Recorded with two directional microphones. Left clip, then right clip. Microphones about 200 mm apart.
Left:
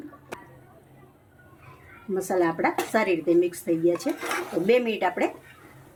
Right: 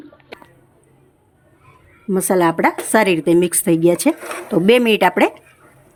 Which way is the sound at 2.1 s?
60° right (ahead or behind).